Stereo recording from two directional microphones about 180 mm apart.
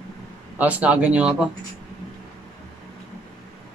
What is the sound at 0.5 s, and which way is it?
Speech, 10° right (ahead or behind).